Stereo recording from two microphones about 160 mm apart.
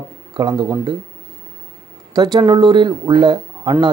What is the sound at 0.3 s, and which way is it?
Speech, 25° right (ahead or behind).